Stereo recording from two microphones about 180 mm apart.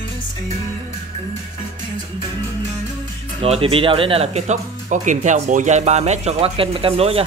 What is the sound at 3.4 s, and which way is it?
Speech, 35° right (ahead or behind).